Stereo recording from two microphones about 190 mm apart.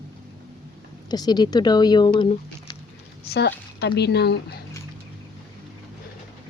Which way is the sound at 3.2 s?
60° left (ahead or behind).